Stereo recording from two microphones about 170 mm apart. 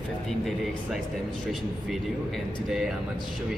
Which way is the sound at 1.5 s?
Centre (ahead or behind).